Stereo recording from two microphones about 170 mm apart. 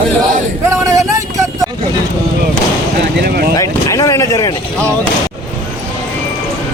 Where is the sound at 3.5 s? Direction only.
20° left (ahead or behind).